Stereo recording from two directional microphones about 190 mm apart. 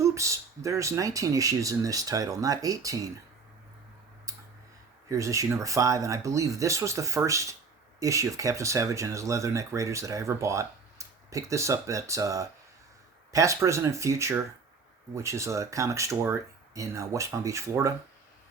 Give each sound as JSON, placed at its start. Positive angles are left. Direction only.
{"t": 0.0, "sound": "speech", "side_deg": -15}
{"t": 5.0, "sound": "speech", "side_deg": -15}